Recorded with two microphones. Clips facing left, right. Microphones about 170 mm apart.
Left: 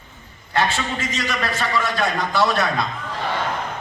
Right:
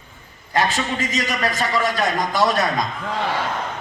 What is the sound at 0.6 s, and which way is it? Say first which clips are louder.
A man's voice: right 2 dB; 40° right (ahead or behind).